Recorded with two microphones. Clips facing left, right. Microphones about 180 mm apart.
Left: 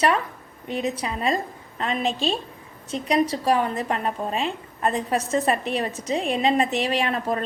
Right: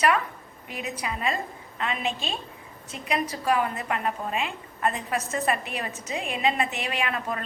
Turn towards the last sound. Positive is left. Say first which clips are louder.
# left 6 dB
turn(degrees=35)  # may be behind; listen again after turning